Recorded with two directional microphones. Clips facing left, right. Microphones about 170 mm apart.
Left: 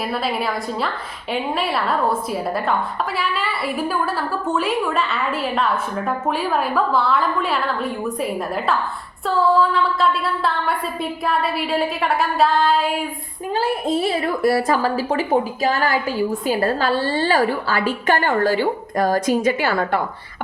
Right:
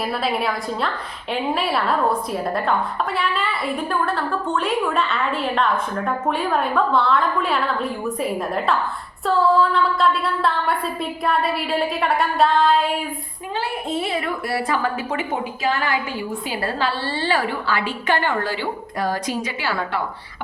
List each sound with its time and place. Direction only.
0.1 s a woman's voice: centre (ahead or behind)
13.5 s a woman's voice: 40° left (ahead or behind)